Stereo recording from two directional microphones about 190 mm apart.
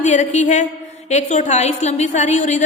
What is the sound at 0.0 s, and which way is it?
A woman's voice, 40° left (ahead or behind).